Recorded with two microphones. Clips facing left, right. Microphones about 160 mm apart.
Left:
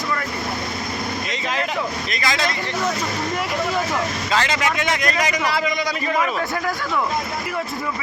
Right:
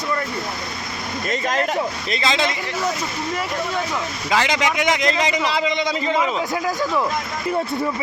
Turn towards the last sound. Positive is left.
turn(degrees=-20)  # may be behind; listen again after turning